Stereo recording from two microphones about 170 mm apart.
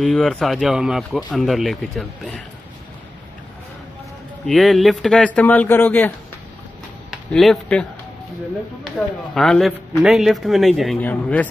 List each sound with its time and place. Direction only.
0.0 s speech: centre (ahead or behind)
4.5 s speech: centre (ahead or behind)
8.8 s speech: centre (ahead or behind)